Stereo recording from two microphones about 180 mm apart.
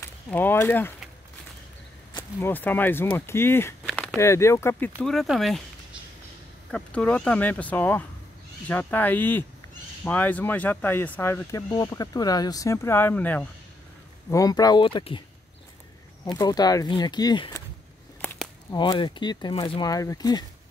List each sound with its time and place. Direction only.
0.0 s speech: 10° left (ahead or behind)
2.4 s speech: 10° left (ahead or behind)
3.9 s a sound: 5° left (ahead or behind)
4.2 s speech: 15° left (ahead or behind)
5.0 s speech: centre (ahead or behind)
6.7 s speech: 5° left (ahead or behind)
14.3 s speech: 20° left (ahead or behind)
16.3 s speech: 20° left (ahead or behind)
18.2 s a sound: 5° left (ahead or behind)
18.7 s speech: 25° left (ahead or behind)